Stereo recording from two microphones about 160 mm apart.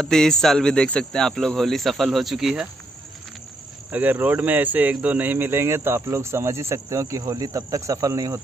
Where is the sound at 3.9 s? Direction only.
10° right (ahead or behind).